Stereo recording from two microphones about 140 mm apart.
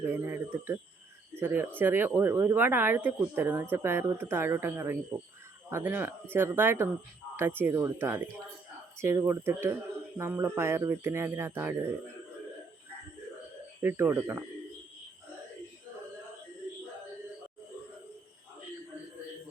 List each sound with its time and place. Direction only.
0.0 s speech: 15° right (ahead or behind)
13.8 s speech: 15° right (ahead or behind)